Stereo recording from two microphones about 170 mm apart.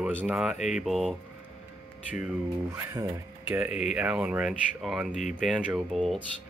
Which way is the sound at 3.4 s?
5° right (ahead or behind).